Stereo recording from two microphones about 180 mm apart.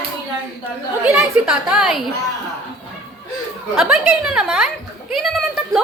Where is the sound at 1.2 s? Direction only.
5° right (ahead or behind).